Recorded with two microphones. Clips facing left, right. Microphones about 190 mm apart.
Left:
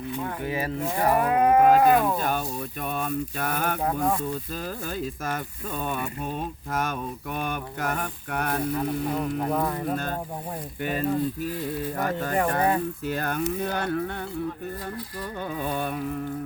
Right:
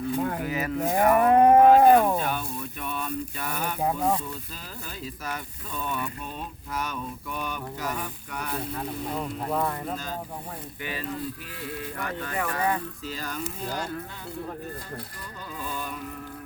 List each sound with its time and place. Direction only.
0.4 s speech: 30° left (ahead or behind)
0.8 s moo: 40° right (ahead or behind)
1.4 s cattle: 35° right (ahead or behind)
2.2 s a sound: 45° left (ahead or behind)
3.8 s speech: 15° right (ahead or behind)
5.0 s speech: 50° left (ahead or behind)
6.7 s mantra: 50° left (ahead or behind)
9.5 s speech: 10° left (ahead or behind)
9.9 s mantra: 55° left (ahead or behind)
10.8 s speech: 45° left (ahead or behind)
13.1 s mantra: 60° left (ahead or behind)
15.4 s mantra: 60° left (ahead or behind)